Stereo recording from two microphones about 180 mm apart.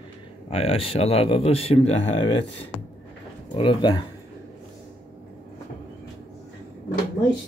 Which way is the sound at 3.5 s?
25° left (ahead or behind).